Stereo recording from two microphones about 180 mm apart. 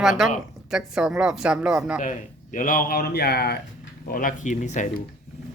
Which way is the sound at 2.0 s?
45° left (ahead or behind).